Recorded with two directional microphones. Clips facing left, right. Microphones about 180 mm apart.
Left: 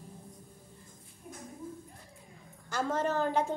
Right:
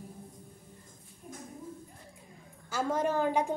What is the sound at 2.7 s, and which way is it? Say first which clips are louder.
Speech: right 1 dB; 10° right (ahead or behind).